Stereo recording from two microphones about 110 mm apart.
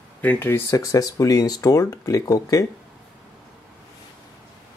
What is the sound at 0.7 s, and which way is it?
Speech, 30° left (ahead or behind).